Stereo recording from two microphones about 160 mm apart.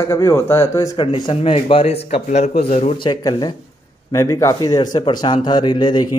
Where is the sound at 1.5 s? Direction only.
40° left (ahead or behind).